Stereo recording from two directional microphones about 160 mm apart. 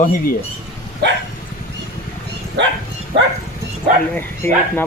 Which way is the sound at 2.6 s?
90° right.